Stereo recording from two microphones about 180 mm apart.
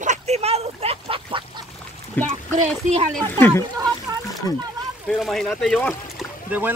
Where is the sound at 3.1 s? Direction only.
5° left (ahead or behind).